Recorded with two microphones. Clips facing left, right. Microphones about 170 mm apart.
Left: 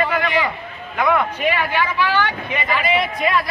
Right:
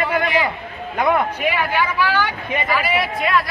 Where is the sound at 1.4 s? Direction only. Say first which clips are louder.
Even; 10° right (ahead or behind).